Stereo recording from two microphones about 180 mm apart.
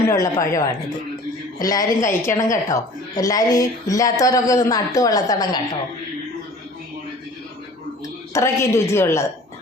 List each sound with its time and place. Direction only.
0.1 s a woman's voice: 15° left (ahead or behind)
8.3 s a woman's voice: 15° left (ahead or behind)